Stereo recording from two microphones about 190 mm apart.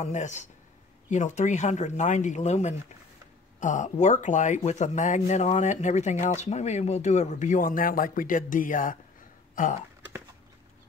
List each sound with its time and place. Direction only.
0.0 s speech: 40° left (ahead or behind)